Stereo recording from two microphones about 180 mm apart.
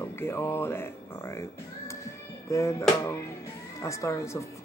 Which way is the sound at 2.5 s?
15° left (ahead or behind).